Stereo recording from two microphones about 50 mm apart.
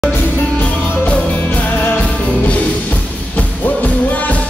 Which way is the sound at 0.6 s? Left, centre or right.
Left.